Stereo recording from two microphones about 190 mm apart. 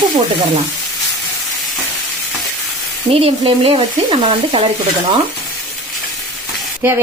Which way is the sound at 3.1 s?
30° right (ahead or behind).